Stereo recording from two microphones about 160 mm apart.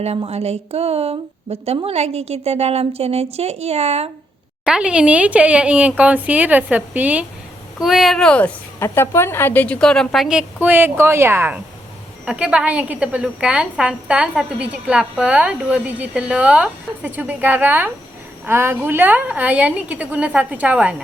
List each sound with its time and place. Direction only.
0.0 s a woman's voice: 40° right (ahead or behind)
4.6 s a woman's voice: 5° right (ahead or behind)